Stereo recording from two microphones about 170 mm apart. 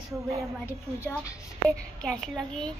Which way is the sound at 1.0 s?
15° left (ahead or behind).